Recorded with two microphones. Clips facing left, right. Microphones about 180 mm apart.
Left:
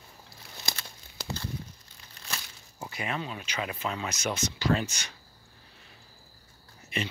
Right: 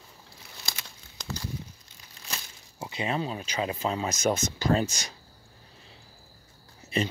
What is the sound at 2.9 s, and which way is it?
Speech, 25° right (ahead or behind).